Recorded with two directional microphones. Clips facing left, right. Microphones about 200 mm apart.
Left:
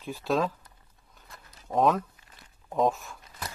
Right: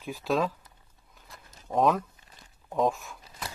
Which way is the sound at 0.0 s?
5° right (ahead or behind).